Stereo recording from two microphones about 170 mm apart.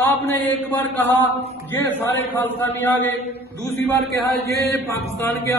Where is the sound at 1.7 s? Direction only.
10° left (ahead or behind).